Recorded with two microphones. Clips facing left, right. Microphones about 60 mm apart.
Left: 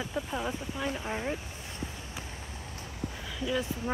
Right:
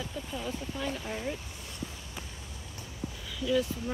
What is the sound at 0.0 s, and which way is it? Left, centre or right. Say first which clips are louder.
Speech: left 4 dB; left.